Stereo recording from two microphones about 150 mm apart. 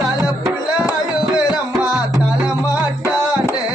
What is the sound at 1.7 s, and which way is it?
Music, 10° right (ahead or behind).